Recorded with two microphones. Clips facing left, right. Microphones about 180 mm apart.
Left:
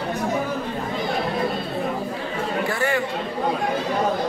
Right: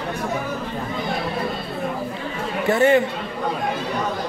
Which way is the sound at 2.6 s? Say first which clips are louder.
Right 10 dB; 20° right (ahead or behind).